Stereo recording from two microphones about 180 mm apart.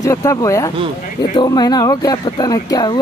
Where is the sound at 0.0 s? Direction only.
15° left (ahead or behind).